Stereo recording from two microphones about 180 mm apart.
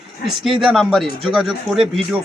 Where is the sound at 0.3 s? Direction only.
Centre (ahead or behind).